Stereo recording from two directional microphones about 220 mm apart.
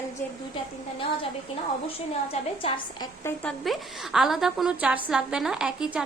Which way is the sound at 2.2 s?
25° left (ahead or behind).